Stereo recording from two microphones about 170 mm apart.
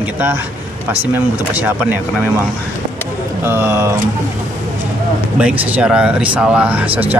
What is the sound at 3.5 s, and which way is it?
Speech, 15° right (ahead or behind).